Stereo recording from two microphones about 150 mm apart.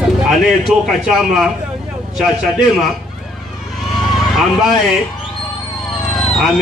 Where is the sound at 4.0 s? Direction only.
Centre (ahead or behind).